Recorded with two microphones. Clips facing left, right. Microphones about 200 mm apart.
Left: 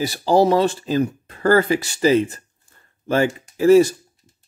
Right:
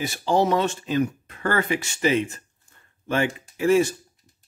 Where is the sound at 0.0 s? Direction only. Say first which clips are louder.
Left 5 dB; 35° left (ahead or behind).